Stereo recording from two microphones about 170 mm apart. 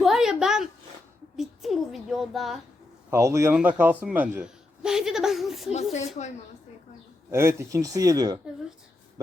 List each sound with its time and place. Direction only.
0.0 s a sound: centre (ahead or behind)
3.1 s a man's voice: 15° right (ahead or behind); by 5.7 s centre (ahead or behind)
5.7 s speech: 40° left (ahead or behind)
7.3 s speech: 15° right (ahead or behind)